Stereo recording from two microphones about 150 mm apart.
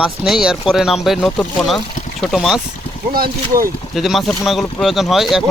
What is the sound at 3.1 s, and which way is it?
Speech, 80° right.